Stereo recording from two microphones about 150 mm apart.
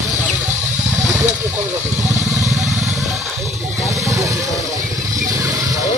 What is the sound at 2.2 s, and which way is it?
Vehicle, 50° right (ahead or behind).